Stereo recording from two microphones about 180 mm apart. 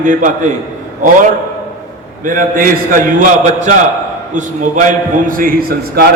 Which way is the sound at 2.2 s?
45° right (ahead or behind).